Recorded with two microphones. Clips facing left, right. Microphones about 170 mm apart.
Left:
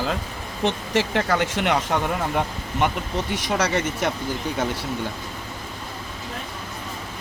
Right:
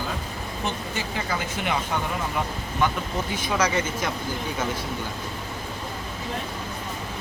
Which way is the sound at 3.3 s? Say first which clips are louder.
Left 1 dB; 75° left (ahead or behind).